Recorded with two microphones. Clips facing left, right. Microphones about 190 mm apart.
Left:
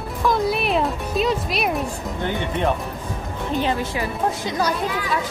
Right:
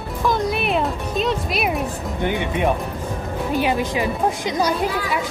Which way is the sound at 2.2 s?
10° right (ahead or behind).